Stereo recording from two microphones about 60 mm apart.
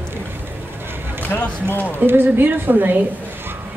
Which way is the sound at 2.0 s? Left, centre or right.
Right.